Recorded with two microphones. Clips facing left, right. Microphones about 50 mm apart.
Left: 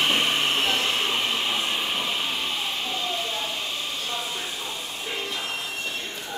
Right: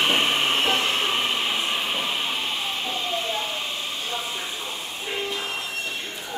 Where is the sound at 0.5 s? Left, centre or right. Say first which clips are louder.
Right 2 dB; centre.